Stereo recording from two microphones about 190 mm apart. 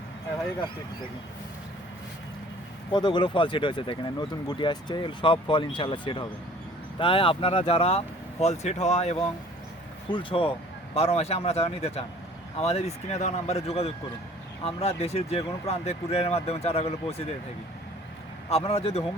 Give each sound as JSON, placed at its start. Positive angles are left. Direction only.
{"t": 2.9, "sound": "speech", "side_deg": 25}
{"t": 18.4, "sound": "speech", "side_deg": 30}